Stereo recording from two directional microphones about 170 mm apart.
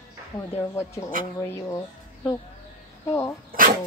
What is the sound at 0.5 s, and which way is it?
Speech, 15° left (ahead or behind).